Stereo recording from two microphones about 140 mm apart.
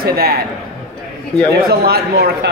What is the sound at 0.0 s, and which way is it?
Speech, 90° right.